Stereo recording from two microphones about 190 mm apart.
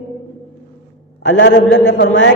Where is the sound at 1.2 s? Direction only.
65° left (ahead or behind).